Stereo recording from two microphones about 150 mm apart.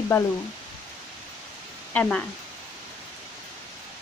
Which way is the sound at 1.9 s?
10° left (ahead or behind).